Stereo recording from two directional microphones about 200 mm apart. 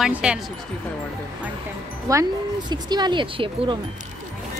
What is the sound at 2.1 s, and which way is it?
Speech, 20° right (ahead or behind).